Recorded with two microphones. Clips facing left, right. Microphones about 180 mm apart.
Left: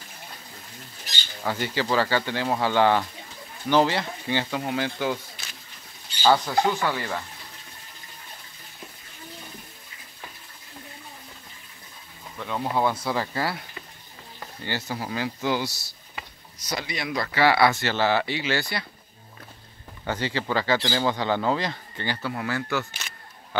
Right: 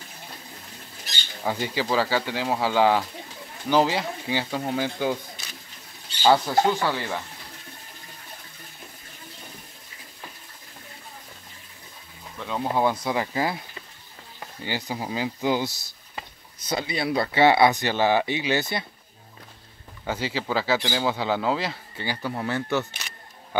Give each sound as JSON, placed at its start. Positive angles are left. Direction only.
{"t": 1.4, "sound": "speech", "side_deg": -15}
{"t": 6.2, "sound": "speech", "side_deg": -20}
{"t": 6.9, "sound": "speech", "side_deg": -5}
{"t": 12.4, "sound": "speech", "side_deg": -15}
{"t": 14.6, "sound": "speech", "side_deg": -15}
{"t": 20.1, "sound": "speech", "side_deg": -5}
{"t": 22.3, "sound": "speech", "side_deg": -20}